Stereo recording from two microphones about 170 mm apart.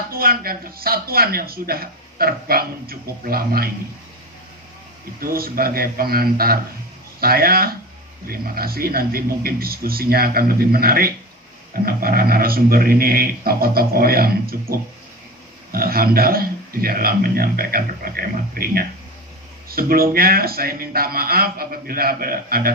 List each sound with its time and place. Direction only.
0.1 s speech: 60° right (ahead or behind)
5.2 s speech: 60° right (ahead or behind)